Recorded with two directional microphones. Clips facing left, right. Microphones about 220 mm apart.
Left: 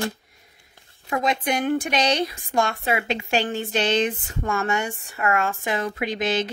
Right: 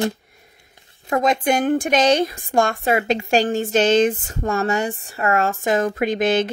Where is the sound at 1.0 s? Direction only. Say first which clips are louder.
Right 5 dB; 45° right (ahead or behind).